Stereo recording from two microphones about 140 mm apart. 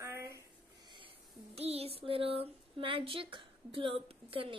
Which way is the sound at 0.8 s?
40° right (ahead or behind).